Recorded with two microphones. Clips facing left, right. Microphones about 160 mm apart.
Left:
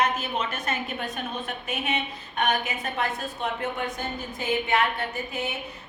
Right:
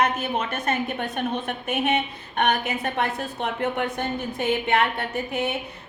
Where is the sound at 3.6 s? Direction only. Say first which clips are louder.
Right 5 dB; 60° right (ahead or behind).